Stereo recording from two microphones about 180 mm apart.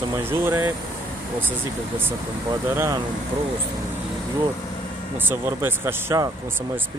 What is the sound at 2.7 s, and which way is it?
Speech, 15° right (ahead or behind).